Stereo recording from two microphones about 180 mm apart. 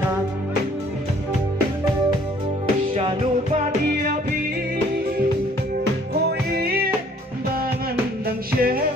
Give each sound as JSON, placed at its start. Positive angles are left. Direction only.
{"t": 2.9, "sound": "music", "side_deg": -30}
{"t": 6.5, "sound": "music", "side_deg": -60}
{"t": 8.3, "sound": "music", "side_deg": -55}